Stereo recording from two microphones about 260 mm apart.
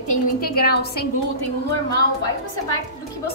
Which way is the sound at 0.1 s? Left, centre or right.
Left.